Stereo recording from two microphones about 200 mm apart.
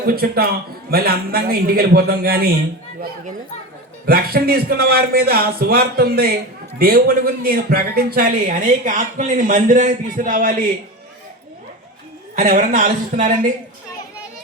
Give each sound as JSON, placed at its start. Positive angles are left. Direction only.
{"t": 0.0, "sound": "a man's voice", "side_deg": -50}
{"t": 4.0, "sound": "a man's voice", "side_deg": -50}
{"t": 12.4, "sound": "speech", "side_deg": -40}